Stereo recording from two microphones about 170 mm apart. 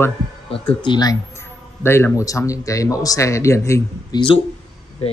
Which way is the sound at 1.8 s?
15° left (ahead or behind).